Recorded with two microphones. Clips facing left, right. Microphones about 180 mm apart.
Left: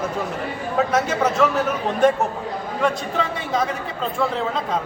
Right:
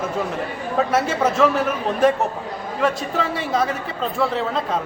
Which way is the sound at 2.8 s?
Centre (ahead or behind).